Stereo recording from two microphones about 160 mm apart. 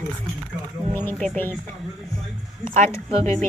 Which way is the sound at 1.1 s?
10° left (ahead or behind).